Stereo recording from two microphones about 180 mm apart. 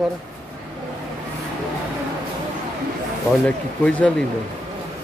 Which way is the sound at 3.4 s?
5° left (ahead or behind).